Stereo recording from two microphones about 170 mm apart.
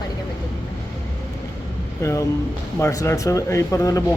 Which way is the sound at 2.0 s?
15° left (ahead or behind).